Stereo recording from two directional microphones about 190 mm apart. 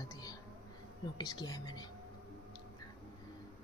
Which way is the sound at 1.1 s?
20° left (ahead or behind).